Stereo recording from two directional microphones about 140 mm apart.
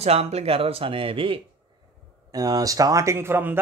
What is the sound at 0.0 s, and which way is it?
Speech, 50° right (ahead or behind).